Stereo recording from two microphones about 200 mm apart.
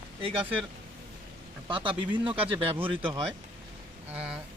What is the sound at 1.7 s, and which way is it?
Speech, 25° right (ahead or behind).